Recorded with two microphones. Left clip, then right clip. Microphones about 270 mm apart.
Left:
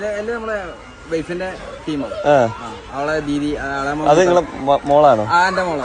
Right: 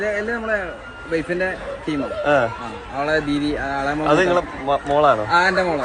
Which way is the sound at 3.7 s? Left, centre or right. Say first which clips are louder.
Left 4 dB; left.